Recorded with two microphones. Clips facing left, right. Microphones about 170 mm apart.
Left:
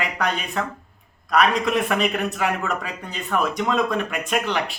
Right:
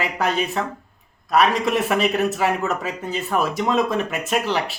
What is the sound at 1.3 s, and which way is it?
Speech, 5° right (ahead or behind).